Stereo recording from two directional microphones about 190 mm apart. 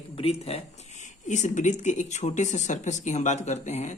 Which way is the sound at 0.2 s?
30° left (ahead or behind).